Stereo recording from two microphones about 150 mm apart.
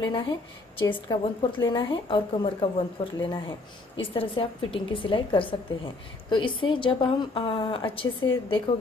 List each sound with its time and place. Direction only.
0.7 s a woman's voice: 30° left (ahead or behind)